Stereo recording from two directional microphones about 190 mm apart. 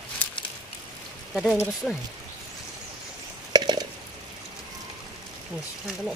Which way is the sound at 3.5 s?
20° right (ahead or behind).